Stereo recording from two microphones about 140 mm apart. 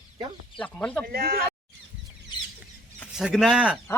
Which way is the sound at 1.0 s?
90° right.